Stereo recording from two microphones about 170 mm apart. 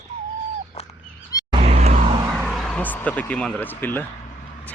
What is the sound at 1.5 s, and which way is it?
Vehicle, 40° right (ahead or behind).